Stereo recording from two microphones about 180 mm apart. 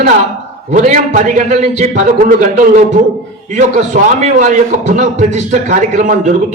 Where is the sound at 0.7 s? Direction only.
45° right (ahead or behind).